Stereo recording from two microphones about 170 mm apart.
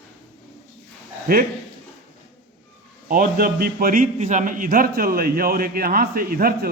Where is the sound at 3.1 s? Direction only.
60° right (ahead or behind).